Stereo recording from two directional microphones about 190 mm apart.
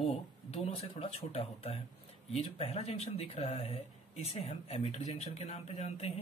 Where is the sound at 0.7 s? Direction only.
30° left (ahead or behind).